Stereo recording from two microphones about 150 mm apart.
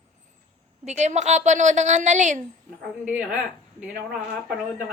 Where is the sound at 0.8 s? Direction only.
50° right (ahead or behind).